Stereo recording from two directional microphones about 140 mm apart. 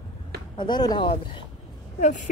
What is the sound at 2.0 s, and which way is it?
Speech, 60° left (ahead or behind).